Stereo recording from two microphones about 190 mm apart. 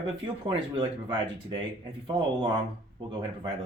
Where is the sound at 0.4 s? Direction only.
25° right (ahead or behind).